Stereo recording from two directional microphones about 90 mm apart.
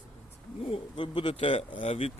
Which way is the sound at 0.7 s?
70° left (ahead or behind).